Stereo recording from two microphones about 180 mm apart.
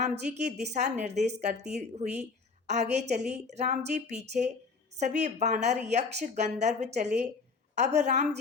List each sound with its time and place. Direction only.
0.0 s a woman's voice: 40° right (ahead or behind)